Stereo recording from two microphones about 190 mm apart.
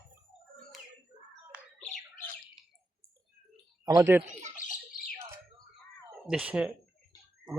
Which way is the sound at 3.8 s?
15° right (ahead or behind).